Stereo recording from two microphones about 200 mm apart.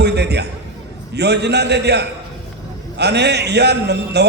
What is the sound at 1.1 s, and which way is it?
A man's voice, 55° right (ahead or behind).